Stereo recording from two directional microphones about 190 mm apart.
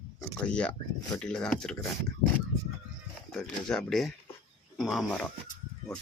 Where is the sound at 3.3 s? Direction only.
5° left (ahead or behind).